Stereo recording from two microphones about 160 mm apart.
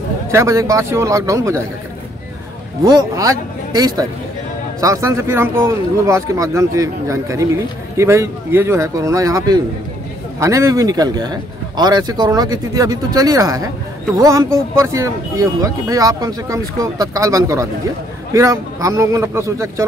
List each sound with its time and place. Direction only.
0.3 s speech: 20° right (ahead or behind)
2.8 s speech: 25° right (ahead or behind)